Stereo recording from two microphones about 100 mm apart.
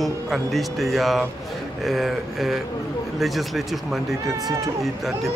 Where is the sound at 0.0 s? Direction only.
Centre (ahead or behind).